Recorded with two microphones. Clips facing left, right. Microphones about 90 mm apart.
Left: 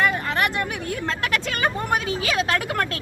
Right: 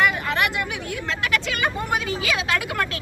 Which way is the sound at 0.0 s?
40° left (ahead or behind).